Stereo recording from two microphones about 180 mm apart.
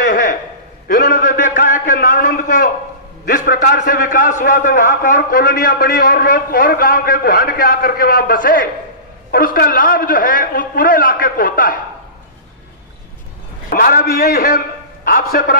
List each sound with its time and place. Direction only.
0.1 s a sound: 45° left (ahead or behind)
0.8 s a man's voice: 50° left (ahead or behind)
13.7 s a man's voice: 50° left (ahead or behind)